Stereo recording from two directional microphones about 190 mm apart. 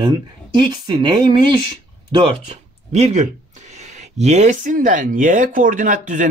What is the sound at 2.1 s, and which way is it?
Speech, 35° right (ahead or behind).